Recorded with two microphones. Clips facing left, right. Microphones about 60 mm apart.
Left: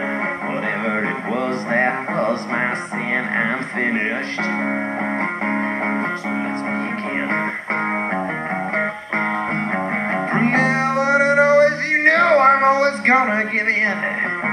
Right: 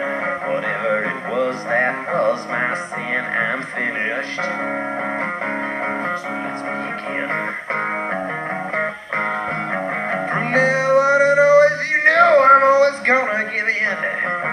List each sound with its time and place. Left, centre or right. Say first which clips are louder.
1.7 s music: left 2 dB; centre
10.4 s music: right 1 dB; left